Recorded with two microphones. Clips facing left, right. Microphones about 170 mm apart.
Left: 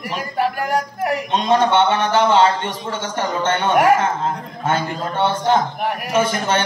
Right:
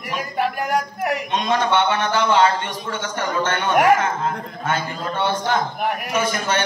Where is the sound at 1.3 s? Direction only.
30° left (ahead or behind).